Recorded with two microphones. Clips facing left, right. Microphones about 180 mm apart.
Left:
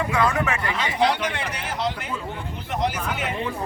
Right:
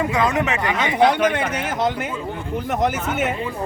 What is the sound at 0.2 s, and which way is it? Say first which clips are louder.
Speech: even; 20° right (ahead or behind).